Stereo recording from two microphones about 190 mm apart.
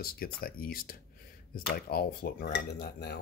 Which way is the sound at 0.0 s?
50° left (ahead or behind).